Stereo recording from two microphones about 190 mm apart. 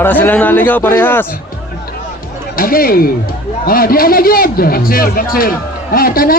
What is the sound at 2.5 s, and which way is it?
A man's voice, 50° left (ahead or behind).